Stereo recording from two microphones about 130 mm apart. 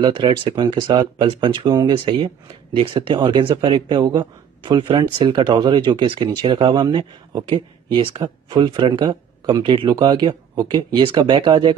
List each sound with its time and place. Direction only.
0.0 s speech: 40° right (ahead or behind)